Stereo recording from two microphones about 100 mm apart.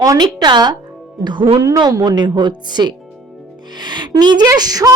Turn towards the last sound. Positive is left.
turn(degrees=-40)  # may be behind; listen again after turning